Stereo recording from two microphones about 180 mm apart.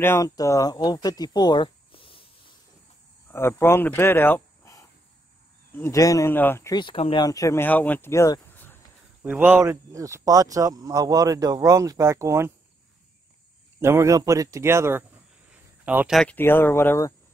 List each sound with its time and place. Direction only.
0.0 s speech: 15° left (ahead or behind)
3.3 s speech: 15° left (ahead or behind)
9.2 s speech: 10° right (ahead or behind)
13.7 s speech: 15° right (ahead or behind)
15.5 s a sound: 10° right (ahead or behind)
16.2 s speech: 10° left (ahead or behind)